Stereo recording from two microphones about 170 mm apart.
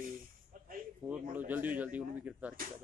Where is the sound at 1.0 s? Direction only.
15° right (ahead or behind).